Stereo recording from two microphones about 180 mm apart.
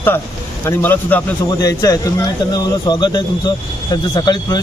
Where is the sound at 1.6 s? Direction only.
20° left (ahead or behind).